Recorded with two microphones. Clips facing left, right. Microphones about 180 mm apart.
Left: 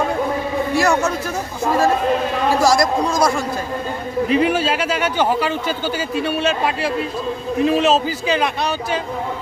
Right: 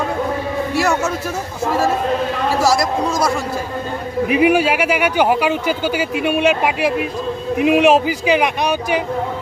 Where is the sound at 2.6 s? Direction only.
5° right (ahead or behind).